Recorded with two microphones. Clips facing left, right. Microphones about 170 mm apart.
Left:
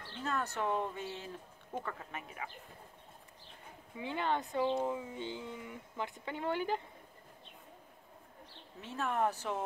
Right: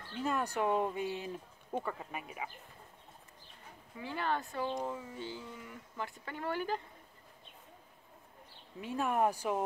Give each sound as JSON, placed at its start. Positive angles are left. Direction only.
{"t": 0.1, "sound": "speech", "side_deg": -10}
{"t": 3.9, "sound": "speech", "side_deg": 20}
{"t": 8.8, "sound": "speech", "side_deg": -10}